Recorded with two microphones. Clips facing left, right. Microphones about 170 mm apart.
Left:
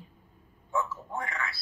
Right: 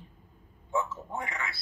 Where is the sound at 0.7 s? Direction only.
20° right (ahead or behind).